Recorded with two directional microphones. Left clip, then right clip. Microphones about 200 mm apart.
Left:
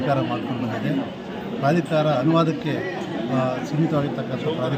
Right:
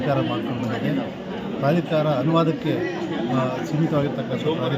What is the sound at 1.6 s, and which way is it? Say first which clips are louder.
Speech: left 1 dB; 5° right (ahead or behind).